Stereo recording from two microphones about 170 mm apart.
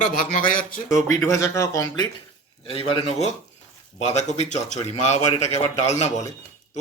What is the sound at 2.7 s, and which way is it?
A man's voice, 35° left (ahead or behind).